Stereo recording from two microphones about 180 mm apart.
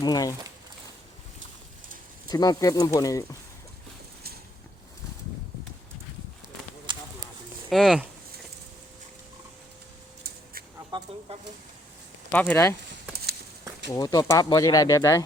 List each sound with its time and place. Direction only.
0.0 s speech: 20° left (ahead or behind)
2.3 s speech: 20° left (ahead or behind)
6.9 s clip-clop: 25° right (ahead or behind)
7.7 s speech: centre (ahead or behind)
10.9 s speech: 25° right (ahead or behind)
11.3 s speech: 35° right (ahead or behind)
12.3 s speech: 10° left (ahead or behind)
13.9 s speech: 20° left (ahead or behind)